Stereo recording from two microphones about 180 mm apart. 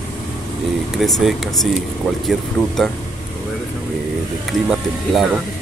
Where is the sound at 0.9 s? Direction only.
Centre (ahead or behind).